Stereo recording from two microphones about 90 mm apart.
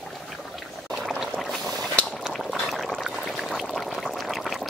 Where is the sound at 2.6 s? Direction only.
Centre (ahead or behind).